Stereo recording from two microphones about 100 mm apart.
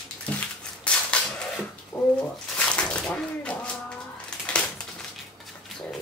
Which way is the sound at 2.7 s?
10° left (ahead or behind).